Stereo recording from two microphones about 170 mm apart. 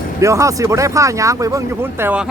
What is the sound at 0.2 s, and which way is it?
Speech, 15° right (ahead or behind).